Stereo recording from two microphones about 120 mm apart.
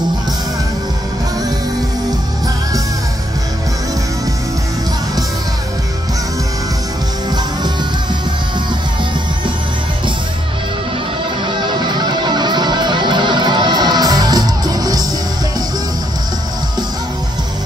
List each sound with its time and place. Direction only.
11.4 s music: 45° right (ahead or behind)